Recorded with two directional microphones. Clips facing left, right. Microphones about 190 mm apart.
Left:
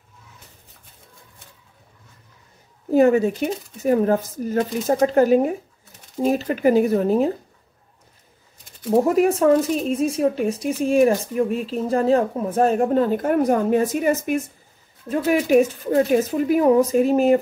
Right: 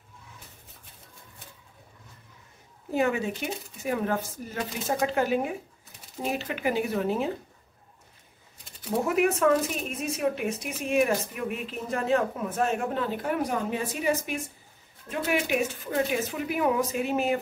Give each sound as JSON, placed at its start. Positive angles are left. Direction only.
{"t": 2.9, "sound": "speech", "side_deg": 40}
{"t": 9.0, "sound": "speech", "side_deg": 35}
{"t": 15.0, "sound": "speech", "side_deg": 40}